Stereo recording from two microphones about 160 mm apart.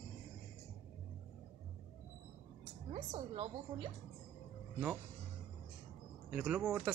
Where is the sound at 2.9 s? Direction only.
45° right (ahead or behind).